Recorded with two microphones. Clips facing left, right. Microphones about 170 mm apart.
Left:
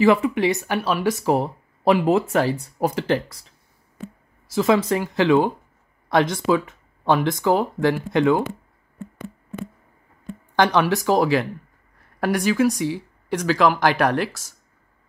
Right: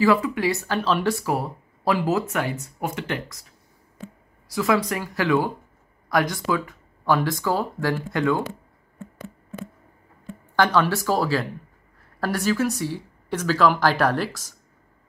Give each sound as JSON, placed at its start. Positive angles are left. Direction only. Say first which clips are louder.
{"t": 0.0, "sound": "speech", "louder": "left 3 dB", "side_deg": 25}
{"t": 4.5, "sound": "speech", "louder": "left 4 dB", "side_deg": 25}
{"t": 10.5, "sound": "speech", "louder": "left 2 dB", "side_deg": 20}